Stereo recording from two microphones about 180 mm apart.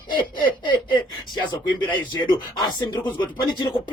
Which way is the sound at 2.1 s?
25° left (ahead or behind).